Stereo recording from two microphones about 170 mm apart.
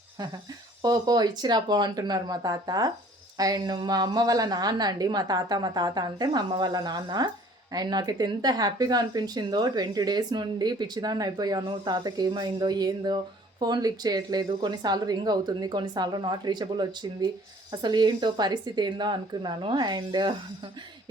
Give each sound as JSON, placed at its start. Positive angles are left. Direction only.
{"t": 0.8, "sound": "speech", "side_deg": -25}